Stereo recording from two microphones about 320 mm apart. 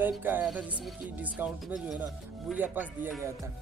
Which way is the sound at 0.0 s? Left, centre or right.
Centre.